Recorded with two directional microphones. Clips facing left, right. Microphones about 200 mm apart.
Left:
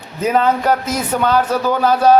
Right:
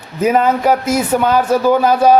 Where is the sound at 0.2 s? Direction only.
10° right (ahead or behind).